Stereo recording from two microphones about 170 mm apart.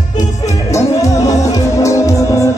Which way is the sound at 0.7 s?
15° left (ahead or behind).